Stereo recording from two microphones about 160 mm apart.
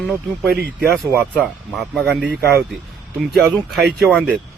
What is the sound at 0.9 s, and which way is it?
A man's voice, 5° left (ahead or behind).